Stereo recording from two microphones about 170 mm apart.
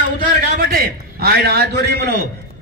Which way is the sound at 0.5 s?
60° right (ahead or behind).